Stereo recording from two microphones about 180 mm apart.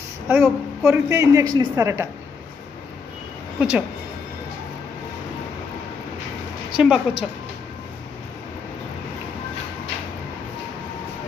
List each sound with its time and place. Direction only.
0.3 s a woman's voice: 10° right (ahead or behind)
3.5 s speech: 10° right (ahead or behind)
6.8 s a woman's voice: 5° right (ahead or behind)